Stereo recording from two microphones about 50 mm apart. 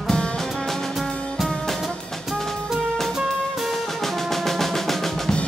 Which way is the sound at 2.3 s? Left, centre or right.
Centre.